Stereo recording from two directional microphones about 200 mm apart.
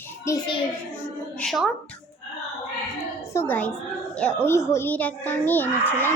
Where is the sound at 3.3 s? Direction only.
10° left (ahead or behind).